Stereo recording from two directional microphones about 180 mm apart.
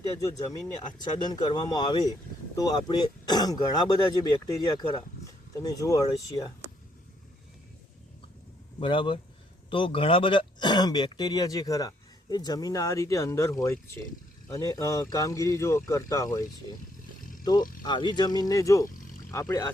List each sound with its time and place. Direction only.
0.2 s speech: 20° left (ahead or behind)
8.8 s speech: 25° left (ahead or behind)